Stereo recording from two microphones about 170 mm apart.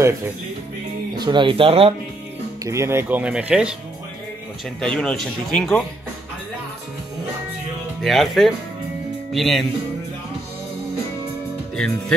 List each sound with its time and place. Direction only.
1.1 s speech: 25° right (ahead or behind)
2.6 s speech: 15° right (ahead or behind)
4.7 s speech: 5° left (ahead or behind)
8.0 s speech: centre (ahead or behind)